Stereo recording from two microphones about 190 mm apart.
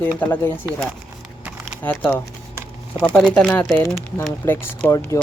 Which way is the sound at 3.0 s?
5° left (ahead or behind).